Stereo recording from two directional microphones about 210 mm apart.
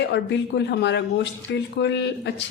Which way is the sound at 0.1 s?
55° left (ahead or behind).